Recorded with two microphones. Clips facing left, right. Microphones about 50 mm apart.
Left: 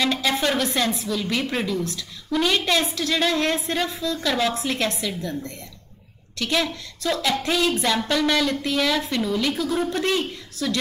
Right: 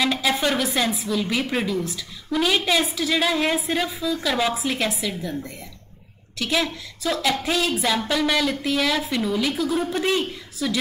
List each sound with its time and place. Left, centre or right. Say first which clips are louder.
0.0 s a woman's voice: even; centre